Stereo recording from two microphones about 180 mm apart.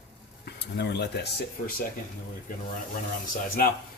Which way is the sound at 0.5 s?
70° left (ahead or behind).